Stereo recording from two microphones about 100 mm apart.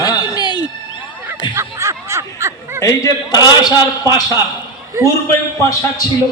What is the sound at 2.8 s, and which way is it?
A man's voice, 30° left (ahead or behind).